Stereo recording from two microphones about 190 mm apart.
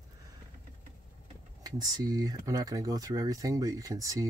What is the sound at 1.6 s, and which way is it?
Speech, 20° right (ahead or behind).